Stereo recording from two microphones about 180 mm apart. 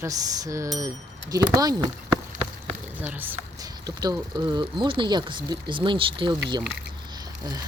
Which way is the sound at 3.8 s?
20° right (ahead or behind).